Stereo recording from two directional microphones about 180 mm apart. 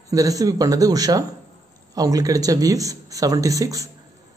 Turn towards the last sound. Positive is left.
turn(degrees=-20)  # may be behind; listen again after turning